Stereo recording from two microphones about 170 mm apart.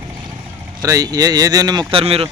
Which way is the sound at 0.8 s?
20° right (ahead or behind).